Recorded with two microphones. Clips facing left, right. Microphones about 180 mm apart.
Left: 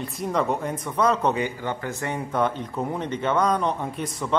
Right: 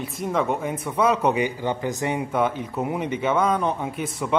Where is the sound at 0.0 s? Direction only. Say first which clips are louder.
Right 1 dB; centre (ahead or behind).